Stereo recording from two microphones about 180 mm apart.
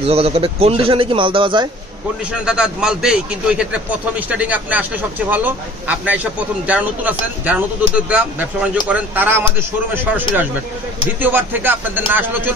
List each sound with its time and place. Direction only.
0.0 s a man's voice: 35° right (ahead or behind)
2.4 s a man's voice: 5° right (ahead or behind)
11.1 s a man's voice: 10° right (ahead or behind)